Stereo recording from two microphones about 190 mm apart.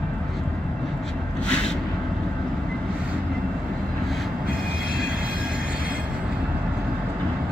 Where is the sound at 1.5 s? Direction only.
5° left (ahead or behind).